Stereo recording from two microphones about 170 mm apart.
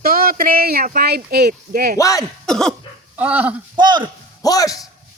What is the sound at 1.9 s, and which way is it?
Speech, 20° left (ahead or behind).